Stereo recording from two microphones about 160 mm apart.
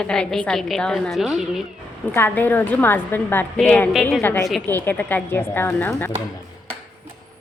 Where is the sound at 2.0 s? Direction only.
10° left (ahead or behind).